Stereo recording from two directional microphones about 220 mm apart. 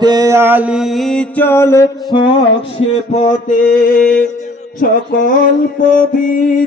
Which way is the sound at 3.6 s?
35° left (ahead or behind).